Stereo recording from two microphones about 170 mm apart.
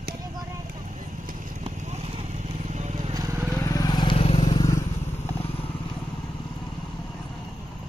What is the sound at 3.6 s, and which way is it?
Vehicle, 20° left (ahead or behind).